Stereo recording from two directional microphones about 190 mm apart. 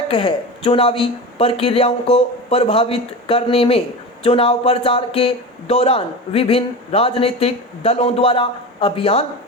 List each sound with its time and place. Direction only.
0.1 s speech: 30° left (ahead or behind)